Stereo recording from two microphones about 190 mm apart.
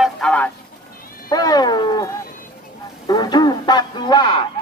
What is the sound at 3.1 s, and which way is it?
Speech, 20° left (ahead or behind).